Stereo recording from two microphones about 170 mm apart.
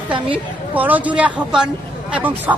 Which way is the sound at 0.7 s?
10° right (ahead or behind).